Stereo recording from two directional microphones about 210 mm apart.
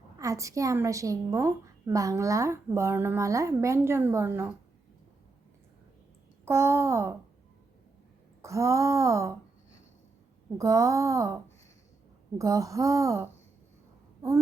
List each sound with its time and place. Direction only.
0.2 s a woman's voice: 15° right (ahead or behind)
6.4 s a woman's voice: 15° right (ahead or behind)
8.4 s a woman's voice: 15° right (ahead or behind)
10.6 s a woman's voice: 15° right (ahead or behind)
12.4 s a woman's voice: 15° right (ahead or behind)